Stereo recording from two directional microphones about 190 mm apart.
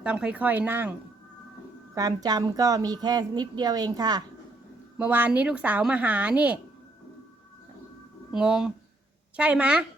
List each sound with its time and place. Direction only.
0.0 s speech: 5° right (ahead or behind)
2.0 s speech: 20° right (ahead or behind)
4.9 s speech: 10° right (ahead or behind)
8.3 s speech: 5° right (ahead or behind)